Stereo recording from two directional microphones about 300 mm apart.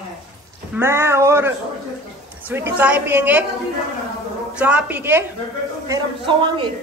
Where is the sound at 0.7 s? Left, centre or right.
Centre.